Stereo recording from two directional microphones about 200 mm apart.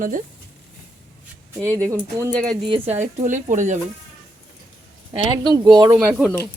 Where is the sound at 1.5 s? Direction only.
15° right (ahead or behind).